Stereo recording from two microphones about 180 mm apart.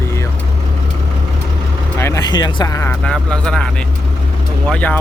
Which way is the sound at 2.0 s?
20° left (ahead or behind).